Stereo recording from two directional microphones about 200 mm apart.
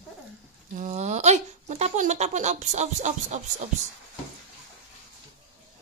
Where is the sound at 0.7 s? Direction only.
35° right (ahead or behind).